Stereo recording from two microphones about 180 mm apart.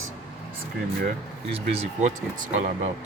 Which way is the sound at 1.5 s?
35° right (ahead or behind).